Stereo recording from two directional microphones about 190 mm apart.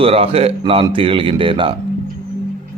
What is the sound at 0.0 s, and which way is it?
A man's voice, 30° right (ahead or behind).